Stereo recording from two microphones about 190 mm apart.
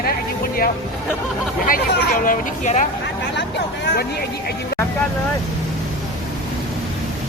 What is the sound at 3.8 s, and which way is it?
Speech, 55° left (ahead or behind).